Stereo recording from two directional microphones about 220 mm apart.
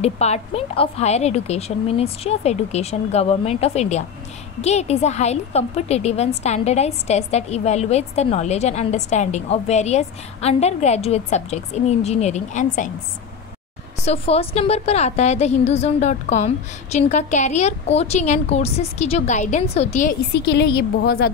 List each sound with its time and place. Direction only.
0.0 s a woman's voice: 30° left (ahead or behind)
14.0 s a woman's voice: 25° left (ahead or behind)
20.3 s a woman's voice: 50° left (ahead or behind)